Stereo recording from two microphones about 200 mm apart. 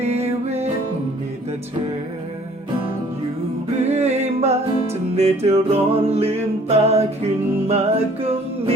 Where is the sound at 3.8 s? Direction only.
35° right (ahead or behind).